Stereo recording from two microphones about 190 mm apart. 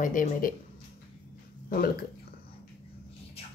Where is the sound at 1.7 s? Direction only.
50° left (ahead or behind).